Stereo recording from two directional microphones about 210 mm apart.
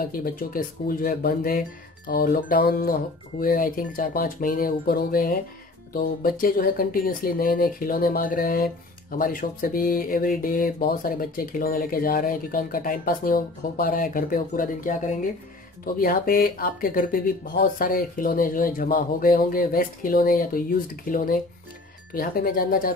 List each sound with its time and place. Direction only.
0.0 s speech: 45° left (ahead or behind)